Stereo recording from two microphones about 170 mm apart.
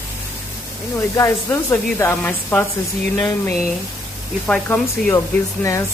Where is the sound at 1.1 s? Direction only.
15° left (ahead or behind).